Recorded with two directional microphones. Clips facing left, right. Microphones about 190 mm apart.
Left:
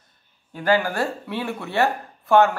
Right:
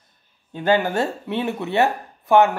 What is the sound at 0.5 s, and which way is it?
Speech, 20° right (ahead or behind).